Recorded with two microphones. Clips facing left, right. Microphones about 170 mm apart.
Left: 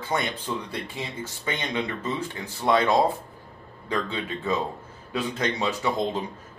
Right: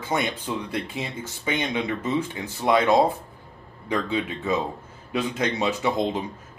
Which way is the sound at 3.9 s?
15° right (ahead or behind).